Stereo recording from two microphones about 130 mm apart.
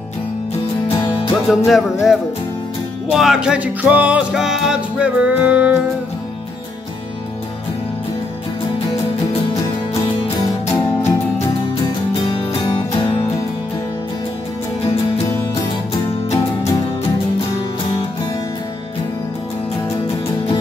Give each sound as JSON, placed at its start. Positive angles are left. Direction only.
{"t": 0.8, "sound": "music", "side_deg": 40}
{"t": 1.5, "sound": "music", "side_deg": 0}
{"t": 12.3, "sound": "music", "side_deg": 35}